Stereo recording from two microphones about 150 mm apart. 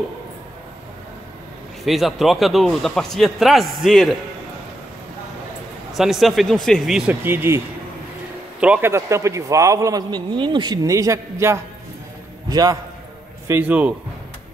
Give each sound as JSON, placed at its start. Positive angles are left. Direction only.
{"t": 1.9, "sound": "speech", "side_deg": 0}
{"t": 5.9, "sound": "speech", "side_deg": 0}
{"t": 7.1, "sound": "a man's voice", "side_deg": -15}
{"t": 13.5, "sound": "speech", "side_deg": -10}